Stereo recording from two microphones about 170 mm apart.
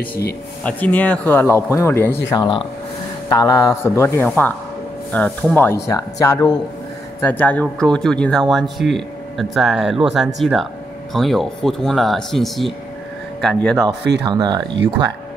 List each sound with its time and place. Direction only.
0.7 s speech: 10° left (ahead or behind)
2.2 s speech: 25° left (ahead or behind)
7.2 s speech: 10° left (ahead or behind)
14.2 s speech: 25° right (ahead or behind)